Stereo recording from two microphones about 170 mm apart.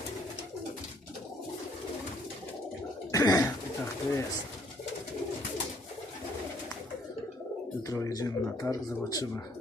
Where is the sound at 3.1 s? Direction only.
20° left (ahead or behind).